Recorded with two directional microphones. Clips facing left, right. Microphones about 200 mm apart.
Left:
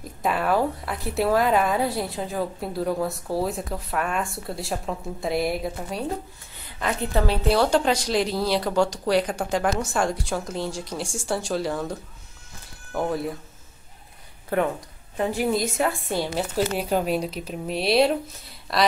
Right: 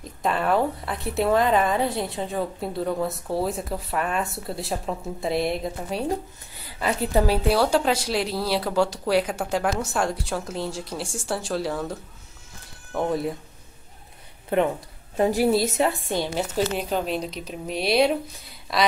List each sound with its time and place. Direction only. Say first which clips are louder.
0.0 s a woman's voice: even; 5° left (ahead or behind)
14.5 s speech: right 2 dB; 20° right (ahead or behind)
15.3 s a woman's voice: right 3 dB; 35° right (ahead or behind)
16.1 s a woman's voice: even; 10° left (ahead or behind)